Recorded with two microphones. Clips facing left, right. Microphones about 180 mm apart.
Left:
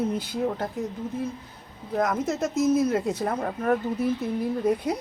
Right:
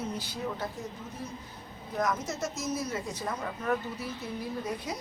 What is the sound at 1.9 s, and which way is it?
A woman's voice, 55° left (ahead or behind).